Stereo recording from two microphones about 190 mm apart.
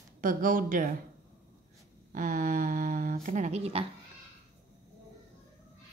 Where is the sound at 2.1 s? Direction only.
45° right (ahead or behind).